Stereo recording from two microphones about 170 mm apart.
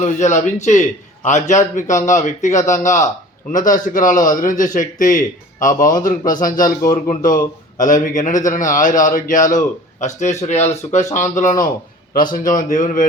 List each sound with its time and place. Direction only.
0.0 s a man's voice: 45° left (ahead or behind)
6.9 s speech: 25° left (ahead or behind)
7.8 s a man's voice: 50° left (ahead or behind)